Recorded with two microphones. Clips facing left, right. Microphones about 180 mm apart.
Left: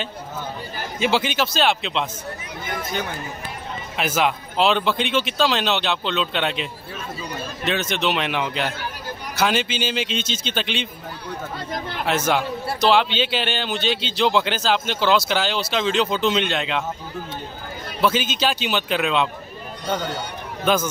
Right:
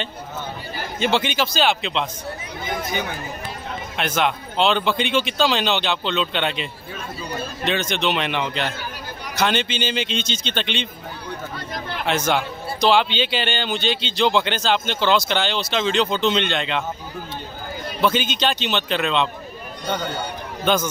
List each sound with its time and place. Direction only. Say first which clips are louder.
0.9 s speech: even; 5° left (ahead or behind)
3.9 s speech: left 1 dB; 5° left (ahead or behind)
12.1 s speech: even; 5° left (ahead or behind)
18.0 s speech: even; 5° left (ahead or behind)
20.6 s speech: even; 5° left (ahead or behind)